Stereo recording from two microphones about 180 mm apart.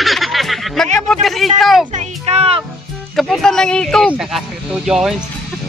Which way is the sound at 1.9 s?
35° right (ahead or behind).